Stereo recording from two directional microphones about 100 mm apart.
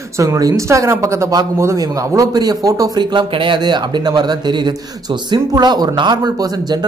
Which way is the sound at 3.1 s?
55° right (ahead or behind).